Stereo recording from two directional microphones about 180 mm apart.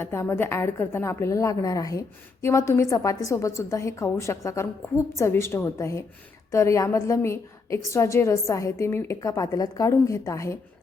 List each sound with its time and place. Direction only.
0.0 s a woman's voice: 15° left (ahead or behind)